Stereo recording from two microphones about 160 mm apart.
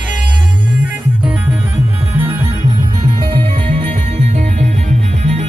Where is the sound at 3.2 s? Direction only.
30° right (ahead or behind).